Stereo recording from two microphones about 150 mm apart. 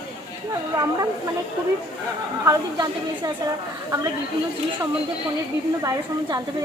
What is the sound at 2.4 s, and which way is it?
Speech, 25° right (ahead or behind).